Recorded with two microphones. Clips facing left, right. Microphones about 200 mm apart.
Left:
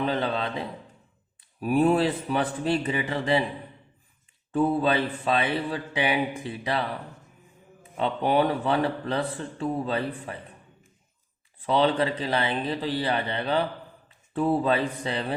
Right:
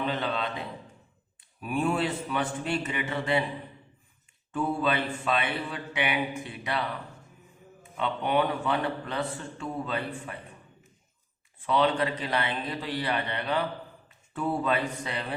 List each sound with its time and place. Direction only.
0.1 s a man's voice: 30° left (ahead or behind)
4.5 s a man's voice: 30° left (ahead or behind)
7.9 s a man's voice: 35° left (ahead or behind)
11.6 s a man's voice: 30° left (ahead or behind)